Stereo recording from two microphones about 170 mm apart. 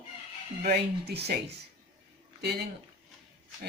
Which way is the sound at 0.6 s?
65° right (ahead or behind).